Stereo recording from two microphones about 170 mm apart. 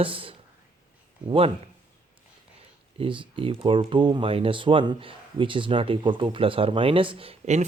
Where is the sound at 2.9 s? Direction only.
30° right (ahead or behind).